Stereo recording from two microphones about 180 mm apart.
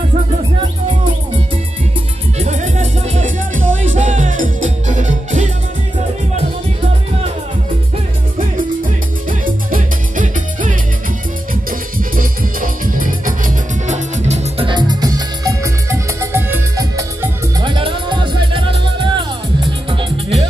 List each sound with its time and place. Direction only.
0.3 s music: 30° right (ahead or behind)
2.3 s music: 40° right (ahead or behind)
8.5 s music: 50° right (ahead or behind)
12.0 s music: 50° right (ahead or behind); by 20.4 s 30° right (ahead or behind)